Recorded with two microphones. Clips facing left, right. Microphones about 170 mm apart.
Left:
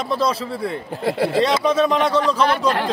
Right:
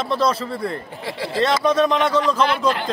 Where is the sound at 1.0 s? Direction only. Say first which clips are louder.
Left 6 dB; 55° left (ahead or behind).